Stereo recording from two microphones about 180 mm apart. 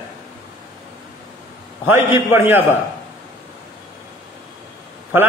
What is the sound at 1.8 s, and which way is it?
Speech, 10° right (ahead or behind).